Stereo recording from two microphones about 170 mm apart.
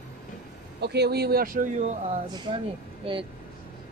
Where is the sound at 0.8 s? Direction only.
75° right (ahead or behind); by 1.9 s 55° right (ahead or behind).